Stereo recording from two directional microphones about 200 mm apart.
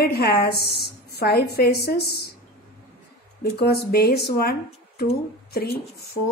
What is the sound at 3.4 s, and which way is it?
A woman's voice, 50° left (ahead or behind).